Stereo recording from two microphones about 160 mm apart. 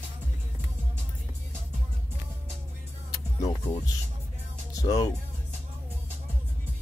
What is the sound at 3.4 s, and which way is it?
Speech, 20° left (ahead or behind).